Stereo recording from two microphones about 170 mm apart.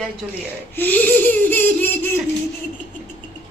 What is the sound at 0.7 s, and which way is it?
Speech, 10° left (ahead or behind).